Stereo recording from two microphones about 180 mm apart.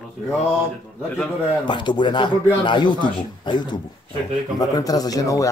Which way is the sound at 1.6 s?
25° left (ahead or behind).